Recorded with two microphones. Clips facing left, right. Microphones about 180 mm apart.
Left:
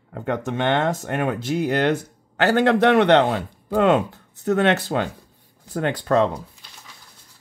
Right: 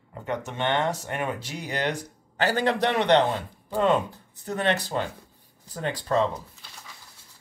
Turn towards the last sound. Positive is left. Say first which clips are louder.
# left 5 dB
turn(degrees=60)  # may be behind; listen again after turning